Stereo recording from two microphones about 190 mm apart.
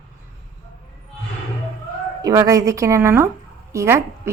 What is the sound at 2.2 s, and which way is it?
A woman's voice, 20° right (ahead or behind).